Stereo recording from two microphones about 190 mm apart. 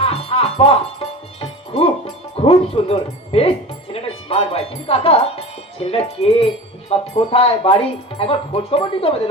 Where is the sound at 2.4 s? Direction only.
30° left (ahead or behind).